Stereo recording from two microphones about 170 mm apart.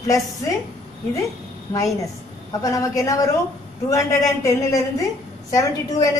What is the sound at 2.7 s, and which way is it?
A woman's voice, 20° left (ahead or behind).